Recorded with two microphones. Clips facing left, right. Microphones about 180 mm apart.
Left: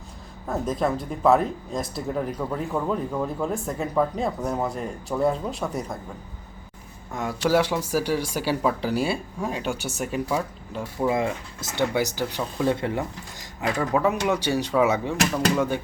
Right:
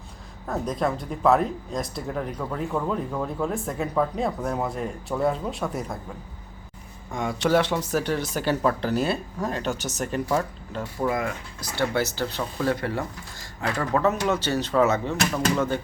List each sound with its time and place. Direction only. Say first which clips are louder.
0.4 s speech: left 1 dB; centre (ahead or behind)
7.1 s speech: even; 5° left (ahead or behind)
11.1 s speech: left 3 dB; 25° left (ahead or behind)